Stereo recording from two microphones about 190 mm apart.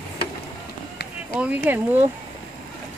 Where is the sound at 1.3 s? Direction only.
5° right (ahead or behind).